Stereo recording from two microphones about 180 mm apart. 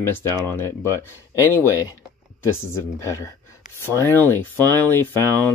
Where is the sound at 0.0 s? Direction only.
15° left (ahead or behind).